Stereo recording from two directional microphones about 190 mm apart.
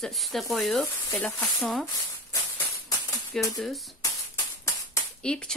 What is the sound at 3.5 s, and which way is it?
Speech, centre (ahead or behind).